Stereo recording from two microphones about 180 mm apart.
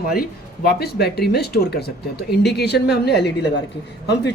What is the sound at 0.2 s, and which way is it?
Speech, 60° left (ahead or behind).